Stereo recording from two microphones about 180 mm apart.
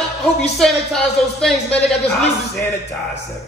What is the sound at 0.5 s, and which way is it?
Speech, centre (ahead or behind).